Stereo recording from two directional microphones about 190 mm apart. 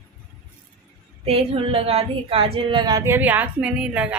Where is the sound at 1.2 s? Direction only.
30° right (ahead or behind).